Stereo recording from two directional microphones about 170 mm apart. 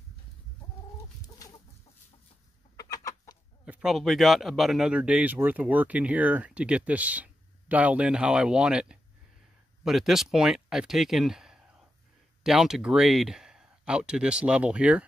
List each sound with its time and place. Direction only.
2.8 s chicken: 20° left (ahead or behind)
3.6 s speech: 5° right (ahead or behind)